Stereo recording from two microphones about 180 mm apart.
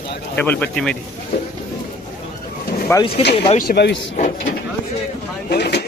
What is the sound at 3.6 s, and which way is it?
Speech, 60° left (ahead or behind).